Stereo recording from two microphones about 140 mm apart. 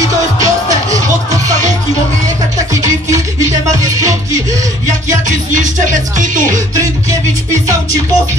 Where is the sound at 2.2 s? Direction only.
25° right (ahead or behind).